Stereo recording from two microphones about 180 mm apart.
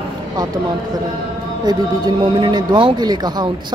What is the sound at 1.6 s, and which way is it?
Speech, 20° right (ahead or behind).